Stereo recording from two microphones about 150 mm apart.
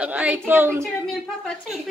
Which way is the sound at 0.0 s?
10° right (ahead or behind).